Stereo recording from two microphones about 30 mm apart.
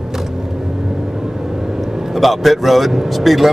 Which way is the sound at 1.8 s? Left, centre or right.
Centre.